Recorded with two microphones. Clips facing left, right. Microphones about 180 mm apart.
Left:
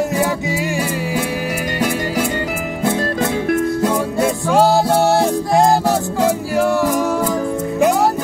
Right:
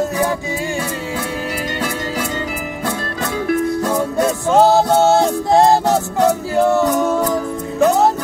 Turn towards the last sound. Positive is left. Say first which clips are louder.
# right 1 dB
turn(degrees=-20)  # may be behind; listen again after turning